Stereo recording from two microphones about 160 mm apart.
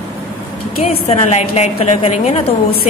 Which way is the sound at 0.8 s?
40° left (ahead or behind).